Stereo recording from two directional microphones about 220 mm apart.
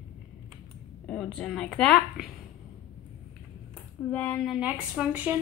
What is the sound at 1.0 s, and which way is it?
A woman's voice, 5° left (ahead or behind).